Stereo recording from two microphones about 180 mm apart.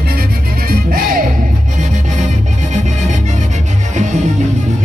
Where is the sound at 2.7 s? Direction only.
40° right (ahead or behind).